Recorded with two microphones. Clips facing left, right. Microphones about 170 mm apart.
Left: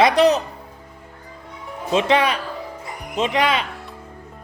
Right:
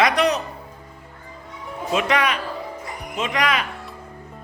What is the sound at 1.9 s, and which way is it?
A man's voice, 30° left (ahead or behind).